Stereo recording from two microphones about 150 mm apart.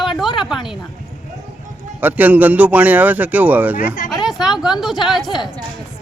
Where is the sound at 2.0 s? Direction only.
10° right (ahead or behind).